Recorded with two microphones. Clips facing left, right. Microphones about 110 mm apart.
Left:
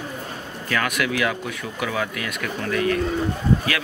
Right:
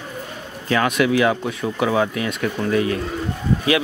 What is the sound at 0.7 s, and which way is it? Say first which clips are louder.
A man's voice: right 6 dB; 25° right (ahead or behind).